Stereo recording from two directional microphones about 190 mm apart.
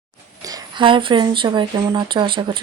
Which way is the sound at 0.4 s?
20° right (ahead or behind).